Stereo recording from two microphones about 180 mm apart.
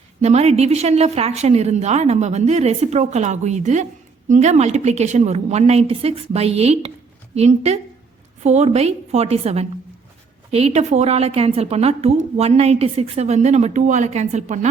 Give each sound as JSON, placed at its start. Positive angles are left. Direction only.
{"t": 0.2, "sound": "a woman's voice", "side_deg": -35}